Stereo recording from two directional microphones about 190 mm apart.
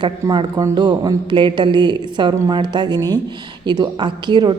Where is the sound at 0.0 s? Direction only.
20° right (ahead or behind).